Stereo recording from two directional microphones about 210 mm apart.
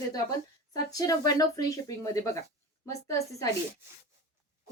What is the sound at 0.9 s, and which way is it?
A woman's voice, 20° left (ahead or behind).